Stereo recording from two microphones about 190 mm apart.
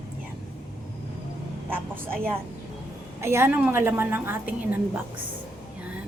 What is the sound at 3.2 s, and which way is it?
A woman's voice, 15° right (ahead or behind).